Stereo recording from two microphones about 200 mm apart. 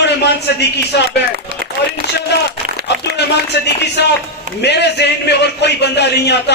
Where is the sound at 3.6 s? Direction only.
55° left (ahead or behind).